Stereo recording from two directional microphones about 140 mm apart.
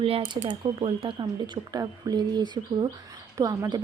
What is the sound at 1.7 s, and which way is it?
A woman's voice, 25° right (ahead or behind).